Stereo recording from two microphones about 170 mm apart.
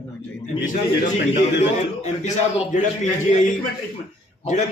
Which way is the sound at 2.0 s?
40° left (ahead or behind).